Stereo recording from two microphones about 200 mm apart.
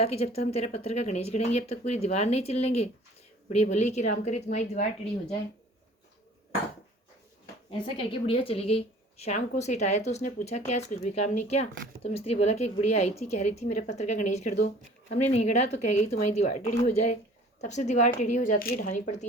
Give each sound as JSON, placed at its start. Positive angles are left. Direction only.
{"t": 0.0, "sound": "a woman's voice", "side_deg": 30}
{"t": 7.7, "sound": "a woman's voice", "side_deg": 30}